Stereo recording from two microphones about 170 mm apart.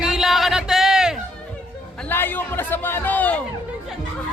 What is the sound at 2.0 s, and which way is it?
A man's voice, 10° left (ahead or behind).